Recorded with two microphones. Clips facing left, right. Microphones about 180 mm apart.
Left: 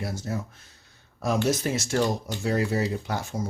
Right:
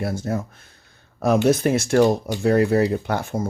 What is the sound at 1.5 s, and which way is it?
Speech, 55° right (ahead or behind).